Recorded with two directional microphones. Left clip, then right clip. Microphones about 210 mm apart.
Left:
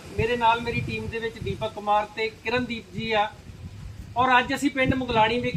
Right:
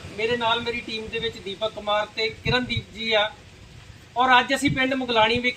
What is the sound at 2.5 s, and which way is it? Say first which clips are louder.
Speech: right 3 dB; 15° right (ahead or behind).